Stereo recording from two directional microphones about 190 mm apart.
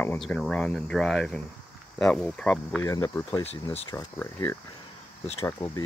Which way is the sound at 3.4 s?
30° left (ahead or behind).